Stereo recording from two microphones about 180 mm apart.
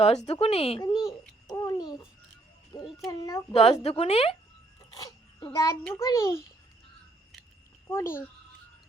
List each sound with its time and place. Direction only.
0.0 s speech: 35° left (ahead or behind)
1.5 s babbling: 20° left (ahead or behind)
2.7 s a child's voice: 25° left (ahead or behind)
3.5 s speech: 35° left (ahead or behind)
4.9 s a sound: 20° left (ahead or behind)
5.9 s a child's voice: 15° left (ahead or behind)
7.9 s a child's voice: 15° left (ahead or behind)